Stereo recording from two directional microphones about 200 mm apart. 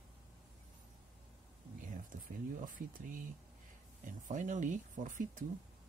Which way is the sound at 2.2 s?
45° right (ahead or behind).